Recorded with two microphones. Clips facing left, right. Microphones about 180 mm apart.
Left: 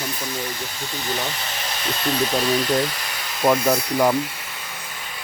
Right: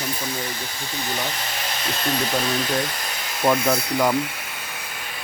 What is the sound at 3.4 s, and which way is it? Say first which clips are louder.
Speech: left 2 dB; 5° left (ahead or behind).